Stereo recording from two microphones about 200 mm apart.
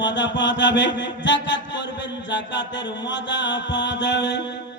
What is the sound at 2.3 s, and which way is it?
Mantra, 65° left (ahead or behind).